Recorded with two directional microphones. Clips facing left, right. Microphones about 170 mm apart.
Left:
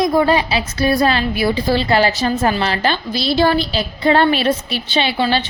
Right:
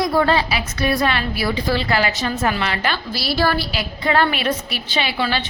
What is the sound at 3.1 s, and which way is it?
A woman's voice, 20° left (ahead or behind).